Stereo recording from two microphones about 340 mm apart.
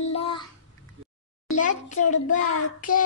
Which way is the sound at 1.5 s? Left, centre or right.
Left.